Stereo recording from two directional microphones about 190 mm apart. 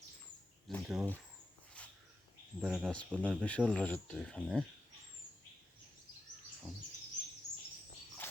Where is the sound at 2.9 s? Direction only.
5° left (ahead or behind).